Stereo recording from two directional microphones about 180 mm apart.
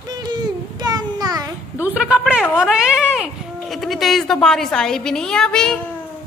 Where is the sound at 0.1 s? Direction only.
20° right (ahead or behind).